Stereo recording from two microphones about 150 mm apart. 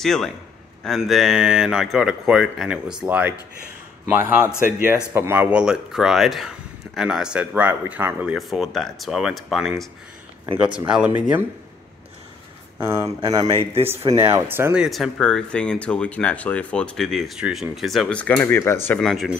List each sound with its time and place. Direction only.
0.0 s speech: centre (ahead or behind)
8.4 s speech: centre (ahead or behind)
10.9 s speech: 10° right (ahead or behind)
12.8 s speech: 25° right (ahead or behind); by 18.9 s 15° left (ahead or behind)
18.9 s speech: centre (ahead or behind)